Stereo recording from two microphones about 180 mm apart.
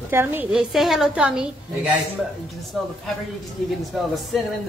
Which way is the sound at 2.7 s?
Centre (ahead or behind).